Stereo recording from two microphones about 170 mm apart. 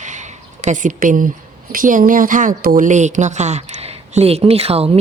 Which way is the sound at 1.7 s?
50° right (ahead or behind).